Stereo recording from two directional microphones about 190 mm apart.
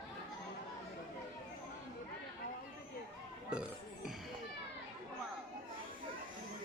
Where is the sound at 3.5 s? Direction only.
5° right (ahead or behind).